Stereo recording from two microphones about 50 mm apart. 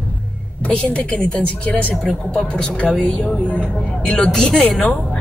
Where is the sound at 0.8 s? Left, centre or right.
Left.